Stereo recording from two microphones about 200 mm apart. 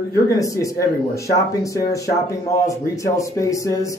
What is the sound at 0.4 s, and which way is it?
Speech, 15° left (ahead or behind).